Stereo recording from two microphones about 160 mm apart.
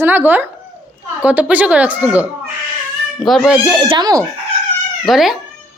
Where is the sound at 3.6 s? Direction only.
25° right (ahead or behind).